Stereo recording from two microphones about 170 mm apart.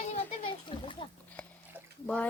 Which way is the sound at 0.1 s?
35° left (ahead or behind).